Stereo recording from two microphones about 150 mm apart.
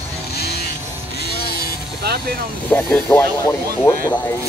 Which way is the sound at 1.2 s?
90° left.